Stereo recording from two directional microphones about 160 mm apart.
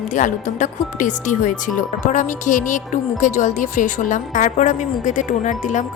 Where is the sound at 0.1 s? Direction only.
50° left (ahead or behind).